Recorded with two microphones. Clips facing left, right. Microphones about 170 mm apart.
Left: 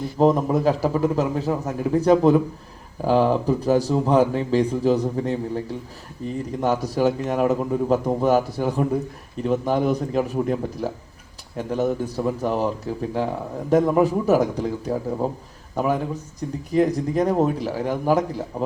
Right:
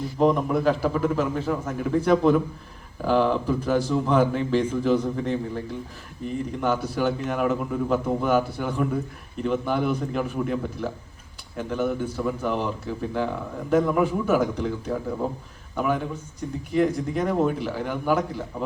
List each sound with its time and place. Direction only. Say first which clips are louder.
0.2 s a man's voice: left 3 dB; 40° left (ahead or behind)